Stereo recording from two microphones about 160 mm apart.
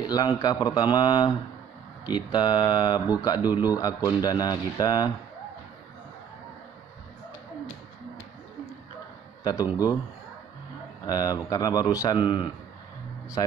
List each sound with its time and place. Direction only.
0.0 s speech: 25° left (ahead or behind)
9.4 s a man's voice: 25° left (ahead or behind)
11.1 s speech: 25° left (ahead or behind)